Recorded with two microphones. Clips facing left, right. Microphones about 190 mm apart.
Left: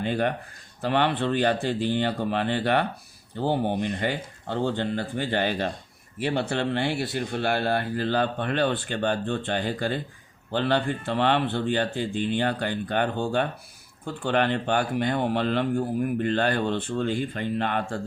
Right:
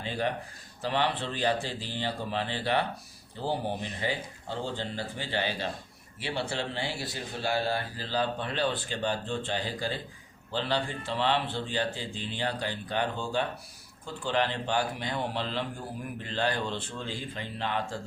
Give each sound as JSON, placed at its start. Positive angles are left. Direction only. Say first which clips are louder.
{"t": 0.0, "sound": "speech", "louder": "left 6 dB", "side_deg": 60}